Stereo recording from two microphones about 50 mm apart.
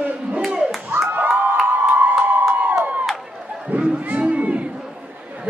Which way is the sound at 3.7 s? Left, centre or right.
Right.